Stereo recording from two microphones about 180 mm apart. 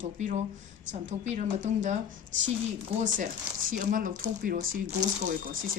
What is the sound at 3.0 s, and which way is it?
Speech, 45° right (ahead or behind).